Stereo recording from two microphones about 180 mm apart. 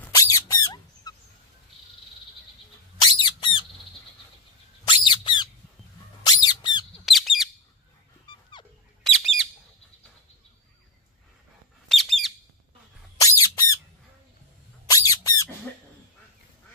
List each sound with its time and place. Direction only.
0.0 s a sound: 20° left (ahead or behind)
1.1 s fowl: 20° left (ahead or behind)
3.2 s a sound: 30° left (ahead or behind)
4.8 s bird: 25° left (ahead or behind)
6.2 s squeak: 25° left (ahead or behind)
7.1 s bird: centre (ahead or behind)
9.0 s bird: centre (ahead or behind)
11.9 s bird: centre (ahead or behind)
13.2 s squawk: 20° left (ahead or behind)
14.9 s squeak: 20° left (ahead or behind)